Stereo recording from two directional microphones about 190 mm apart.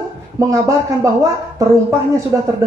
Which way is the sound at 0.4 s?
15° right (ahead or behind).